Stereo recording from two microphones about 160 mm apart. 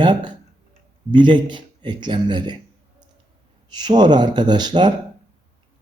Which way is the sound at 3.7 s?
25° right (ahead or behind).